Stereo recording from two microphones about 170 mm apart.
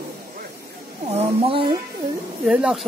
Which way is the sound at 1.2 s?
35° right (ahead or behind).